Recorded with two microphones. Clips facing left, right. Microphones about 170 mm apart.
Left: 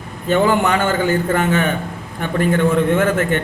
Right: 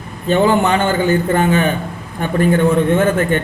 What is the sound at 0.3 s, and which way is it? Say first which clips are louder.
A man's voice: right 2 dB; 30° right (ahead or behind).